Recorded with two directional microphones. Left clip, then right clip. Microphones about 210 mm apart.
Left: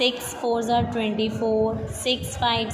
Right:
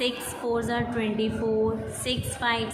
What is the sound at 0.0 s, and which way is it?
A woman's voice, 15° left (ahead or behind).